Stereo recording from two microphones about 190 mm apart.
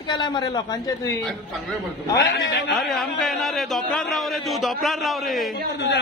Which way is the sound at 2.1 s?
60° left (ahead or behind).